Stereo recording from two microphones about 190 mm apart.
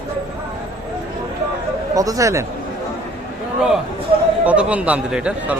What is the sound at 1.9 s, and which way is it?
Speech, 20° right (ahead or behind).